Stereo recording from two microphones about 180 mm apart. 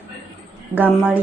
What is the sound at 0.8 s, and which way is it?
Speech, 10° right (ahead or behind).